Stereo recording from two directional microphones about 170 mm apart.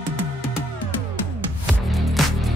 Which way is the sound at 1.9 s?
Centre (ahead or behind).